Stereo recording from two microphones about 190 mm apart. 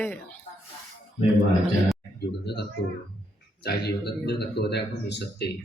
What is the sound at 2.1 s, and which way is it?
Speech, 60° left (ahead or behind).